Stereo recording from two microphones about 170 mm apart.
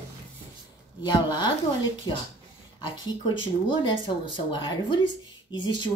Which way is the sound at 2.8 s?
25° left (ahead or behind).